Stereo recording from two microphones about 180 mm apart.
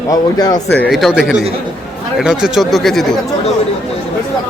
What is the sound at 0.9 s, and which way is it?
Speech, 5° right (ahead or behind).